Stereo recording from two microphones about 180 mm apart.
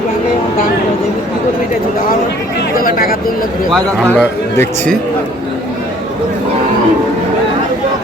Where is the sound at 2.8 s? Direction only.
55° left (ahead or behind).